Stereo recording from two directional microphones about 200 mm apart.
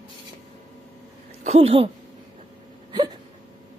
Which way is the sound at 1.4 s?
30° right (ahead or behind).